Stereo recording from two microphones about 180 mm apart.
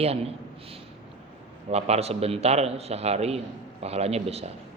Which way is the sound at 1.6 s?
35° right (ahead or behind).